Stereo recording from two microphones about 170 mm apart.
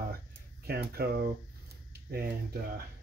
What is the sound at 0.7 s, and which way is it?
Speech, 70° right (ahead or behind).